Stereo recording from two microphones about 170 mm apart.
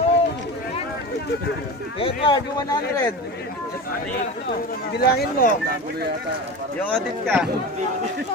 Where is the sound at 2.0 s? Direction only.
30° left (ahead or behind).